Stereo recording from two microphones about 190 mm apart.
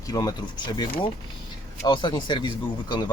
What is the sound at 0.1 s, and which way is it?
Speech, 20° left (ahead or behind).